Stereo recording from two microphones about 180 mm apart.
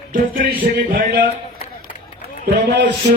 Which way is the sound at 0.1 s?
50° right (ahead or behind).